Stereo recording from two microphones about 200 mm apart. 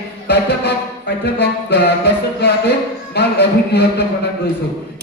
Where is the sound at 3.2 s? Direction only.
55° left (ahead or behind).